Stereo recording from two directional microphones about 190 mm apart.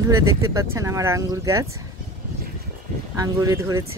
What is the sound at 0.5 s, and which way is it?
Speech, 15° right (ahead or behind).